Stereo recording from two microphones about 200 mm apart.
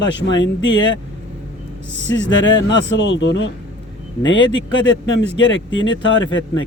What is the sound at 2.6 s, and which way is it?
Speech, 65° left (ahead or behind).